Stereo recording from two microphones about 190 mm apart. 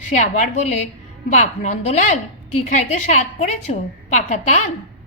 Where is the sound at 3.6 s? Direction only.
40° left (ahead or behind).